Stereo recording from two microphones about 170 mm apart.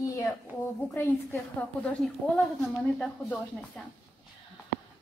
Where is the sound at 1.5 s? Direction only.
5° left (ahead or behind).